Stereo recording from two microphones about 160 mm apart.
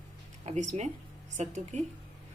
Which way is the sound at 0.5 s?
45° right (ahead or behind).